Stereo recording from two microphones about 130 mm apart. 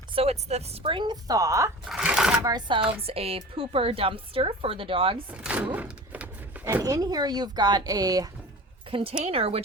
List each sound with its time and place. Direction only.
0.1 s speech: 50° right (ahead or behind); by 1.7 s 25° right (ahead or behind)
1.9 s shuffling cards: 5° right (ahead or behind)
2.4 s speech: 30° right (ahead or behind)
5.3 s a sound: 10° right (ahead or behind)
6.8 s speech: 30° right (ahead or behind)
8.9 s a woman's voice: 45° right (ahead or behind)